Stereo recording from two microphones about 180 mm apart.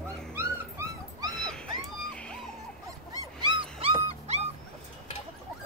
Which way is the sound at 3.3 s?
25° right (ahead or behind).